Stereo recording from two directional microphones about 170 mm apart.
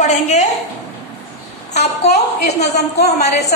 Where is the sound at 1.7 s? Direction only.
40° left (ahead or behind).